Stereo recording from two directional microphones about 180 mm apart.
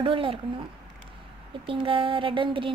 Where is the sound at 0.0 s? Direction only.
30° right (ahead or behind).